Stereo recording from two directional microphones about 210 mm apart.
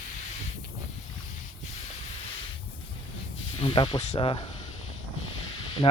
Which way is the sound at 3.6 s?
20° left (ahead or behind).